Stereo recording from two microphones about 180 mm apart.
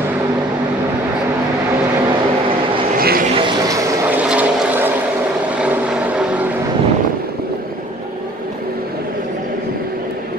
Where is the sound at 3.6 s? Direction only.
20° right (ahead or behind).